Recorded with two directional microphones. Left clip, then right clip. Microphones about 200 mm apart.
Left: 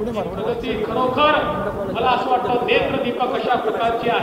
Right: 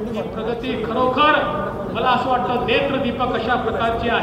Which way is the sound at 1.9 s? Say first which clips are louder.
Even; 50° right (ahead or behind).